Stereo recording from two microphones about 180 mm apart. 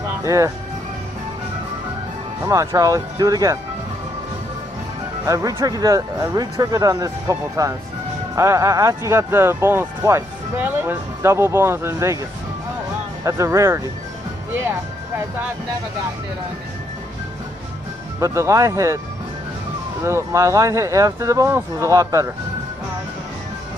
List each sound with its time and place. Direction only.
0.2 s speech: 15° right (ahead or behind)
2.4 s speech: 15° right (ahead or behind)
5.2 s speech: 15° right (ahead or behind)
13.2 s speech: 15° right (ahead or behind)
14.6 s music: 15° right (ahead or behind)
18.2 s speech: 15° right (ahead or behind)
20.0 s speech: 15° right (ahead or behind)